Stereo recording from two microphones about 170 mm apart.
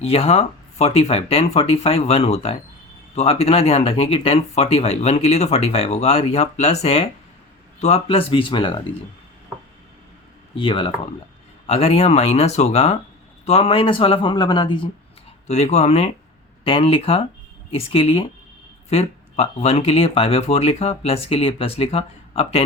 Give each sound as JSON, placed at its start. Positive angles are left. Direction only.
{"t": 0.0, "sound": "speech", "side_deg": 35}
{"t": 10.5, "sound": "speech", "side_deg": 30}
{"t": 15.4, "sound": "speech", "side_deg": 40}